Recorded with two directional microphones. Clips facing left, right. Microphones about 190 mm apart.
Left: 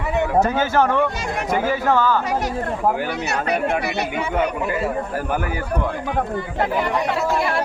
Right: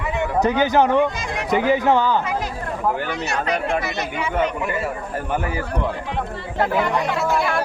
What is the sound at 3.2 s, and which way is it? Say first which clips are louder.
Speech: left 1 dB; 65° left (ahead or behind).